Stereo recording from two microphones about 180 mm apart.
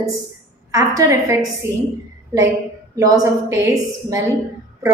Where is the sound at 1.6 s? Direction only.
75° right (ahead or behind).